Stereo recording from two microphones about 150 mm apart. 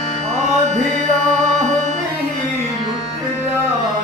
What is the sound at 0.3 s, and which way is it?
Music, 50° right (ahead or behind).